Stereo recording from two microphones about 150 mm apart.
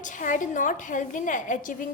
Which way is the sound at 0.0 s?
60° left (ahead or behind).